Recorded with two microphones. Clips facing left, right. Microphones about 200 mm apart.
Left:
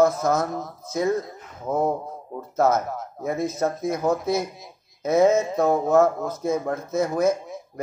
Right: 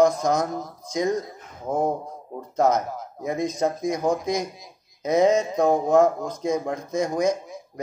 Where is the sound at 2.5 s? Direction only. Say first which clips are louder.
Even; 15° right (ahead or behind).